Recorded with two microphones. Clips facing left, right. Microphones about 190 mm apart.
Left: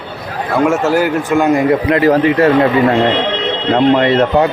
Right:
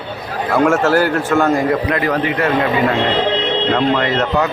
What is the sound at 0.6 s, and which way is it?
A man's voice, 10° left (ahead or behind).